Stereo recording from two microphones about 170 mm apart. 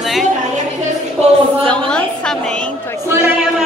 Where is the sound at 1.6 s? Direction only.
5° left (ahead or behind).